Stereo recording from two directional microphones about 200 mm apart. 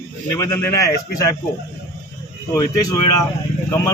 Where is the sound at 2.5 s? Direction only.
20° left (ahead or behind).